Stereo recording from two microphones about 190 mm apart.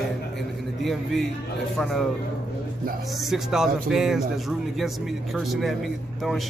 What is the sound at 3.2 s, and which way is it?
Speech, centre (ahead or behind).